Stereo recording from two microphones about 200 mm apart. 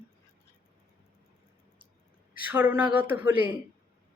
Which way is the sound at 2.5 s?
10° right (ahead or behind).